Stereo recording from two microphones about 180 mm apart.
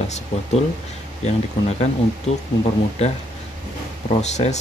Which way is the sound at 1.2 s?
35° left (ahead or behind).